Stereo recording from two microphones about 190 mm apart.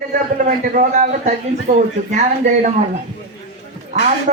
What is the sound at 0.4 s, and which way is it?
Speech, 40° right (ahead or behind).